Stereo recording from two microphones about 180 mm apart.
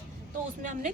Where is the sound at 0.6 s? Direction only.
45° right (ahead or behind).